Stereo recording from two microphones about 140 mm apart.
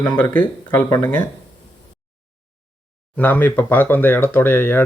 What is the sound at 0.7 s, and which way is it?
Speech, 20° left (ahead or behind).